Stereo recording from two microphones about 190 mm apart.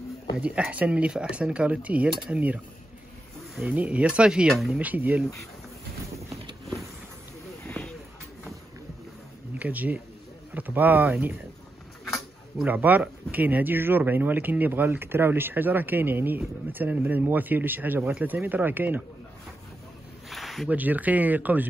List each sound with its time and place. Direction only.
0.4 s speech: 5° right (ahead or behind)
7.6 s a sound: 5° left (ahead or behind)
9.5 s speech: 10° right (ahead or behind)
20.2 s speech: centre (ahead or behind)